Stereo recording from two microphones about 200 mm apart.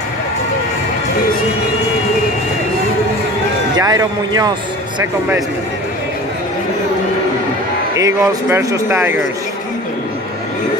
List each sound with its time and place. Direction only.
3.7 s a man's voice: 20° right (ahead or behind)
8.0 s a man's voice: 15° right (ahead or behind)